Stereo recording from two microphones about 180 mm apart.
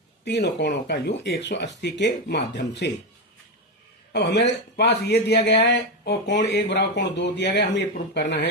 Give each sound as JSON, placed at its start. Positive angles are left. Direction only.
{"t": 0.3, "sound": "speech", "side_deg": 75}
{"t": 4.1, "sound": "speech", "side_deg": 70}